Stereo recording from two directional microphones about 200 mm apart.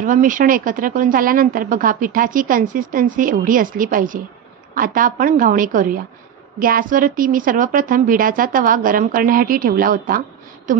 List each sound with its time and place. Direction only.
0.0 s speech: 40° right (ahead or behind)